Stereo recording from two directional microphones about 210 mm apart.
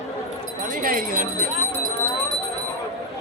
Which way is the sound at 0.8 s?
40° right (ahead or behind).